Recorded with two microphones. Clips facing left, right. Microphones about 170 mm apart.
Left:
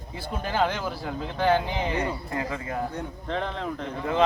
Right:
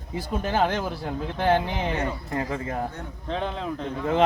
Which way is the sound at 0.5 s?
20° right (ahead or behind).